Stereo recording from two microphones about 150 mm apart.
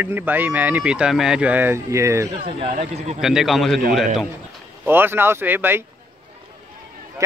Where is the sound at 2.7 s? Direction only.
45° right (ahead or behind).